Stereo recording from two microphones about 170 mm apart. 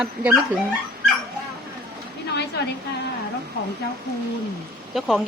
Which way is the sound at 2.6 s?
90° left.